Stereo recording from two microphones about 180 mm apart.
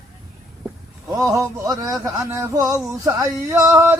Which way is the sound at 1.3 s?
20° right (ahead or behind).